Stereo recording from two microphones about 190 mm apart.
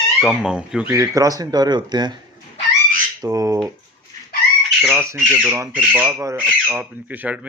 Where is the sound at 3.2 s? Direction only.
15° right (ahead or behind).